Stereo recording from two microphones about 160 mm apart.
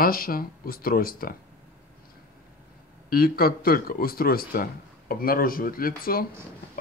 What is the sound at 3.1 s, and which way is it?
Speech, 70° left (ahead or behind).